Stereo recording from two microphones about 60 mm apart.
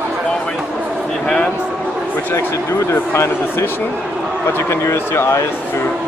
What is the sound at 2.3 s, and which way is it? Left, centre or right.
Speech, left.